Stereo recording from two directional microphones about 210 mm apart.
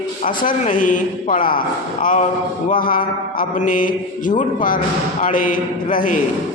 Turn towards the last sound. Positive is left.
turn(degrees=40)  # may be behind; listen again after turning